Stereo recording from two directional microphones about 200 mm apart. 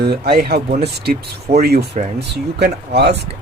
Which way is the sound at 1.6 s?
50° right (ahead or behind).